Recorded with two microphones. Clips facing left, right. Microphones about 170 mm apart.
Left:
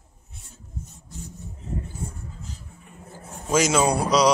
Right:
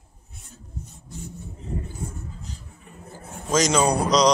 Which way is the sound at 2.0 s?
30° left (ahead or behind).